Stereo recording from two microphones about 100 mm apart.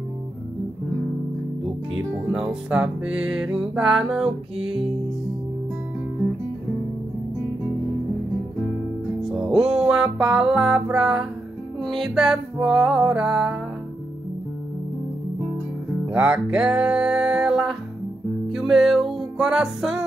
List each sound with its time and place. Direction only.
2.3 s music: 15° right (ahead or behind)
9.2 s music: 5° right (ahead or behind)
16.1 s music: 15° right (ahead or behind)